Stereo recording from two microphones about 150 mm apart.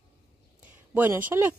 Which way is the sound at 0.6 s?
10° right (ahead or behind).